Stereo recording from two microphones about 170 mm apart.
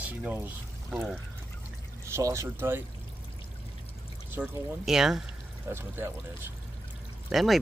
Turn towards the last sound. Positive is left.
turn(degrees=0)  # may be behind; listen again after turning